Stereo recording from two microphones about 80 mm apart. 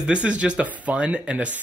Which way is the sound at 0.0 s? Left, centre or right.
Centre.